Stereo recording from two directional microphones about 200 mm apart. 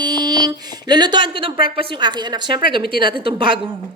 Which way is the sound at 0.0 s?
20° right (ahead or behind).